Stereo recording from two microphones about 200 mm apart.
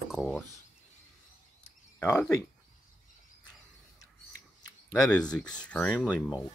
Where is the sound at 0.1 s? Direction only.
Centre (ahead or behind).